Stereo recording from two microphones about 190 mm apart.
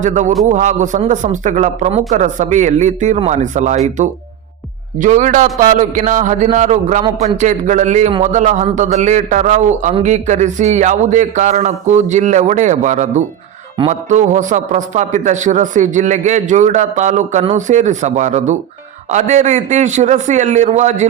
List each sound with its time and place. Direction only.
0.0 s a man's voice: 40° right (ahead or behind)